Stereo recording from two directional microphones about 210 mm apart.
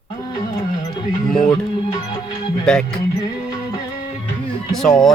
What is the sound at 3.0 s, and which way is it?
Music, 20° left (ahead or behind).